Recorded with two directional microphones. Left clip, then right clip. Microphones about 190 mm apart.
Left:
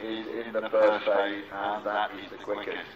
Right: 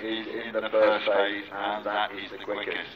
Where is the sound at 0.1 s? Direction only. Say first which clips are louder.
Right 2 dB; 5° left (ahead or behind).